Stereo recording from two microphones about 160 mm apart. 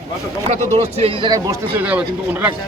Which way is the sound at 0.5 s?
45° right (ahead or behind).